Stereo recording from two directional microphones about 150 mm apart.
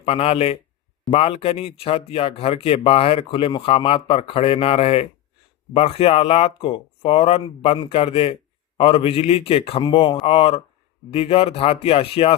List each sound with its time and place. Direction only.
0.0 s speech: 40° left (ahead or behind)